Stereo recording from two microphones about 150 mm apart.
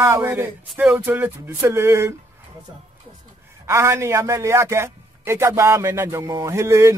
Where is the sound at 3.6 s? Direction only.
20° right (ahead or behind).